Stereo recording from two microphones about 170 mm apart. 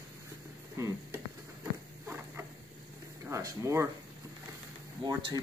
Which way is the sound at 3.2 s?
20° right (ahead or behind).